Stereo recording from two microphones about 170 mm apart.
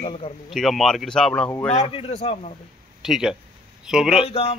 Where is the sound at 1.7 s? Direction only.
35° left (ahead or behind).